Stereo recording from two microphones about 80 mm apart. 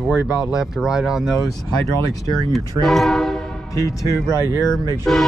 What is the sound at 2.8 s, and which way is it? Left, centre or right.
Speech, centre.